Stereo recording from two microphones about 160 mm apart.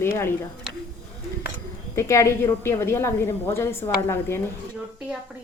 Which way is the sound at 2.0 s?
20° left (ahead or behind).